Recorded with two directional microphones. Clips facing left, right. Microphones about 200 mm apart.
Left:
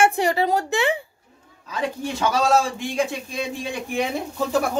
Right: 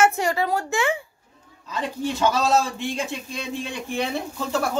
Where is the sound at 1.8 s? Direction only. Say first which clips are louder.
Right 1 dB; 10° left (ahead or behind).